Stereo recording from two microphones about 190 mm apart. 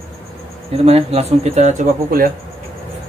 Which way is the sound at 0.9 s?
30° right (ahead or behind).